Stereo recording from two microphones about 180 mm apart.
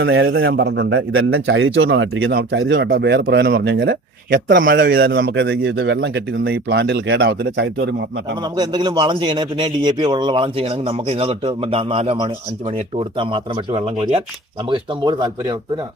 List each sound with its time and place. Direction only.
0.0 s a man's voice: 90° right
4.5 s speech: 50° right (ahead or behind); by 8.4 s 70° right (ahead or behind)
8.4 s a man's voice: 25° right (ahead or behind)